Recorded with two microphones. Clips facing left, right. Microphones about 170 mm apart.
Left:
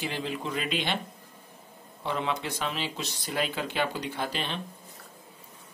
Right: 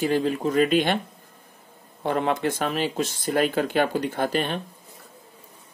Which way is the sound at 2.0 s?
50° right (ahead or behind).